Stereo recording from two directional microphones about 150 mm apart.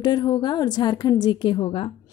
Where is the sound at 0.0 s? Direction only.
30° left (ahead or behind).